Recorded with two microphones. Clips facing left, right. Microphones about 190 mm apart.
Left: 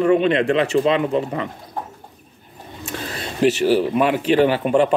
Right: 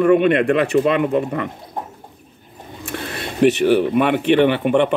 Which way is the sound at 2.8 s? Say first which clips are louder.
Right 2 dB; 60° right (ahead or behind).